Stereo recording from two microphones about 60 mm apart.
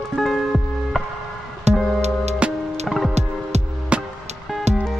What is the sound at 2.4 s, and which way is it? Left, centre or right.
Music, centre.